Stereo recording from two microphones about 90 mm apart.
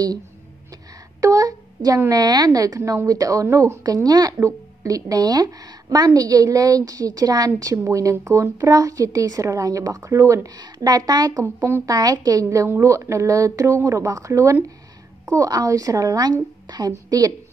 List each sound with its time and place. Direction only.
1.2 s a child's voice: 40° right (ahead or behind)
11.4 s speech: 30° right (ahead or behind)
11.8 s a woman's voice: 45° right (ahead or behind)